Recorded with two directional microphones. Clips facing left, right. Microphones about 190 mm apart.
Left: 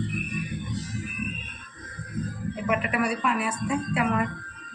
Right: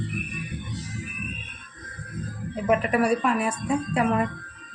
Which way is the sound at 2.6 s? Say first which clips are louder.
Right 5 dB; 40° right (ahead or behind).